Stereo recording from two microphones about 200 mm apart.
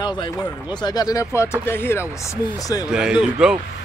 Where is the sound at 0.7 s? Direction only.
20° left (ahead or behind).